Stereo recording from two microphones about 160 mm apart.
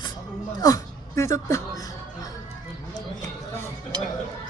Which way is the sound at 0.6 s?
20° left (ahead or behind).